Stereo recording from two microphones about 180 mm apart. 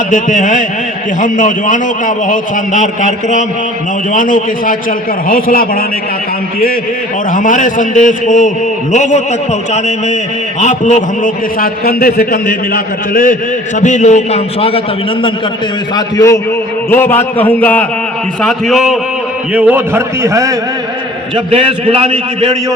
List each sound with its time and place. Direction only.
0.1 s a man's voice: 45° left (ahead or behind)
7.3 s a man's voice: 45° left (ahead or behind)
16.0 s a man's voice: 20° left (ahead or behind); by 20.6 s 15° right (ahead or behind)
21.3 s a man's voice: 35° right (ahead or behind)